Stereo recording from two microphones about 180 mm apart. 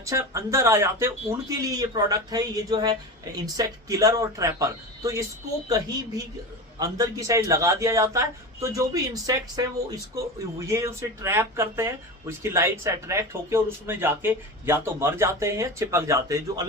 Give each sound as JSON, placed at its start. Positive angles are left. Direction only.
{"t": 0.0, "sound": "speech", "side_deg": -15}